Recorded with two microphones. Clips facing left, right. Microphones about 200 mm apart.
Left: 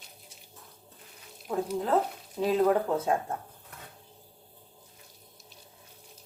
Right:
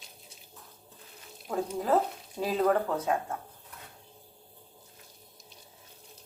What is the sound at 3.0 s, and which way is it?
Speech, 30° left (ahead or behind).